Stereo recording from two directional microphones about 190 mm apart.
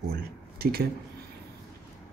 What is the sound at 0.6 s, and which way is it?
Speech, 55° right (ahead or behind).